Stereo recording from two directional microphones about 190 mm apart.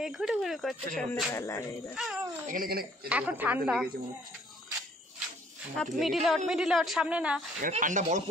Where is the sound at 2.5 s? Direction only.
50° right (ahead or behind).